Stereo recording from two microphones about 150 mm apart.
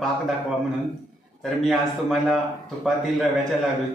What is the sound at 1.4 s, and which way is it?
Speech, centre (ahead or behind).